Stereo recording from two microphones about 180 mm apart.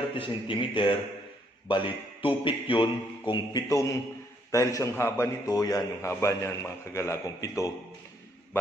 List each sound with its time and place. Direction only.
0.2 s a man's voice: 30° left (ahead or behind)